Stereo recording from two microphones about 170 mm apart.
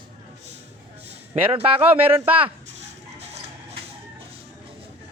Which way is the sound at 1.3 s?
40° right (ahead or behind).